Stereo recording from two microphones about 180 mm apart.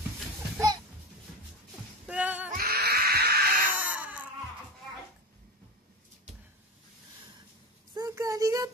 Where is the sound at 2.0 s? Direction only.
10° right (ahead or behind).